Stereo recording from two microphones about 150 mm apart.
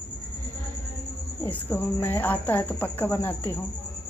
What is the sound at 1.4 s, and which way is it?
Speech, 15° left (ahead or behind).